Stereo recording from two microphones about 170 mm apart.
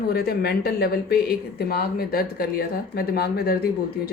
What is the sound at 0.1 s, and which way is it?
Speech, 70° left (ahead or behind).